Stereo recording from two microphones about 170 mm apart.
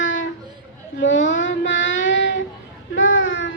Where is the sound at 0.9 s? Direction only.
90° left.